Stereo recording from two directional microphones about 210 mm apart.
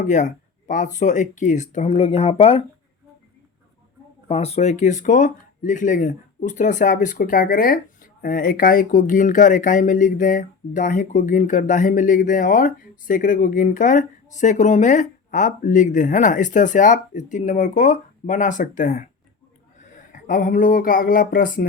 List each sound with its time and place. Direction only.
0.0 s speech: 35° left (ahead or behind)
4.3 s speech: 30° left (ahead or behind)
20.1 s speech: 40° left (ahead or behind)